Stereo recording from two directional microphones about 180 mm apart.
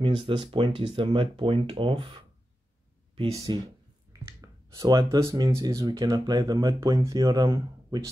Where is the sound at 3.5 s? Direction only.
25° right (ahead or behind).